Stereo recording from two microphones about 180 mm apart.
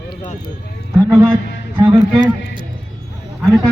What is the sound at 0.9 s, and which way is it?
Speech, 20° right (ahead or behind).